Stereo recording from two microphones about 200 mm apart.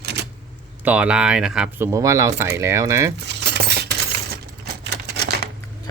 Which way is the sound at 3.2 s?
60° right (ahead or behind).